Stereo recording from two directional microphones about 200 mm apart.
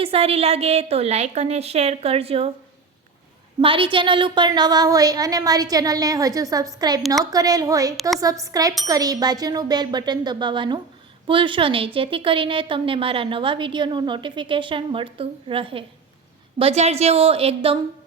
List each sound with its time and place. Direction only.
0.0 s a woman's voice: 30° right (ahead or behind)
3.6 s a woman's voice: 25° right (ahead or behind)